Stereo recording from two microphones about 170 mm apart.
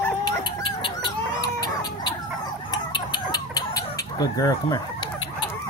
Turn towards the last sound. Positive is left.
turn(degrees=20)  # may be behind; listen again after turning